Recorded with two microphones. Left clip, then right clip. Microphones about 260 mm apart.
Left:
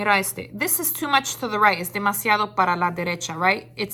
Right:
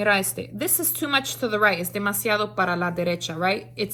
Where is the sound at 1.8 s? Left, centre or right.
Left.